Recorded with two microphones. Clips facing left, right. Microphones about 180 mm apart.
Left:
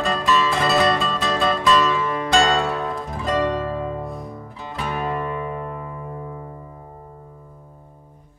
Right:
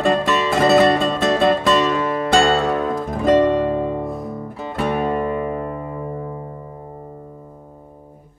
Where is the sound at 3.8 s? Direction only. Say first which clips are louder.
Right 5 dB; 25° right (ahead or behind).